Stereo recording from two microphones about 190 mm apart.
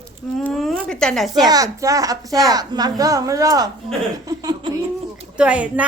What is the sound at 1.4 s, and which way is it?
A woman's voice, 20° right (ahead or behind).